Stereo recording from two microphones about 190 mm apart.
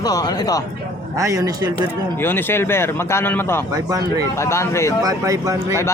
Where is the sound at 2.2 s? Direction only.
10° left (ahead or behind).